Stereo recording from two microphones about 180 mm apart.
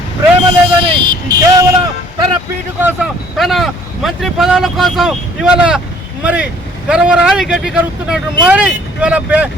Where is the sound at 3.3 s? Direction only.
Centre (ahead or behind).